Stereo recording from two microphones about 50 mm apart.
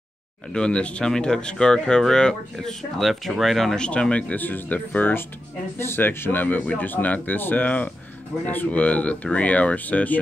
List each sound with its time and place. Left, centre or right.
0.5 s speech: centre
3.7 s speech: centre
4.4 s speech: left
5.8 s speech: left
7.6 s speech: left